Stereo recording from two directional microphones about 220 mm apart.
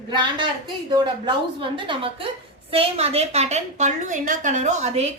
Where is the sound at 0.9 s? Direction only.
20° right (ahead or behind).